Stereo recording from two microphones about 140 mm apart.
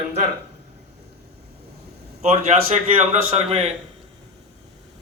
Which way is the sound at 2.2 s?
50° right (ahead or behind).